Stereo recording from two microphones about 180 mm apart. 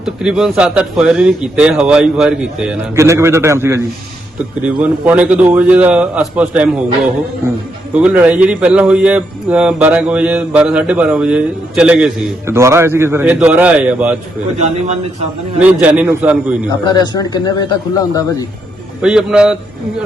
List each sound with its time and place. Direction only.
0.0 s speech: 5° right (ahead or behind)
2.9 s speech: 15° right (ahead or behind)
12.5 s speech: 15° right (ahead or behind)
15.5 s speech: 5° right (ahead or behind)
16.8 s speech: 25° left (ahead or behind)
19.0 s speech: 5° right (ahead or behind)